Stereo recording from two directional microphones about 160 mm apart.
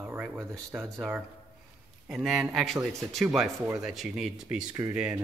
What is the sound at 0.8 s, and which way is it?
Speech, centre (ahead or behind).